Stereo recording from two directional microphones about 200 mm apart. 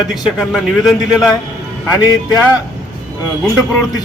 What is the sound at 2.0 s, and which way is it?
Speech, 20° left (ahead or behind).